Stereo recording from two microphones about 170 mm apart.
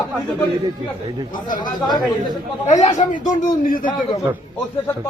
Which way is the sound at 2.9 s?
45° left (ahead or behind).